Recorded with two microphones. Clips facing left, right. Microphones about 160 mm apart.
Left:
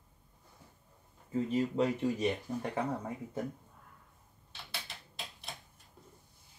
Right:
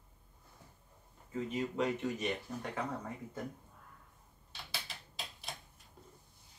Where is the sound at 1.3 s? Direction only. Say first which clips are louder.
Left 5 dB; 35° left (ahead or behind).